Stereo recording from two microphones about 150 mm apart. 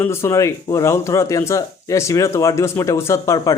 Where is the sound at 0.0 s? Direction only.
15° left (ahead or behind).